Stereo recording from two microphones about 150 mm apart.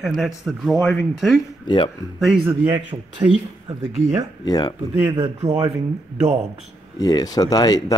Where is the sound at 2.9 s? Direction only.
30° right (ahead or behind).